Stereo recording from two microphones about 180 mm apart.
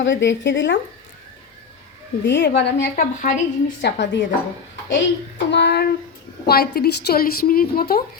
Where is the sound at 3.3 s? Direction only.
45° left (ahead or behind).